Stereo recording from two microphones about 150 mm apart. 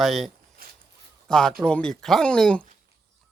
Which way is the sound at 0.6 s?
80° right.